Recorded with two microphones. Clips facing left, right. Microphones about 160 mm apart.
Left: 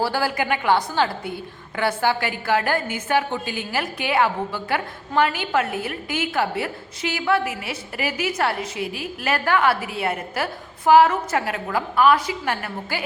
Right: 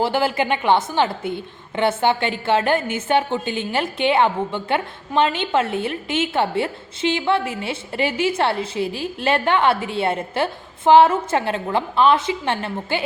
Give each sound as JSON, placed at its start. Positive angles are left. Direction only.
{"t": 0.0, "sound": "a woman's voice", "side_deg": -20}